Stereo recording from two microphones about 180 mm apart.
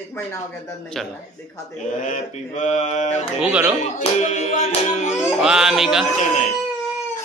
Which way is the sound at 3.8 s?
40° left (ahead or behind).